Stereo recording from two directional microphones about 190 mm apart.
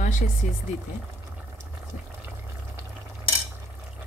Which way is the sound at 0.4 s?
40° left (ahead or behind).